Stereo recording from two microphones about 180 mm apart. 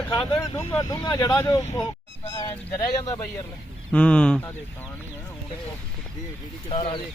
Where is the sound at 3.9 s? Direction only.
5° left (ahead or behind).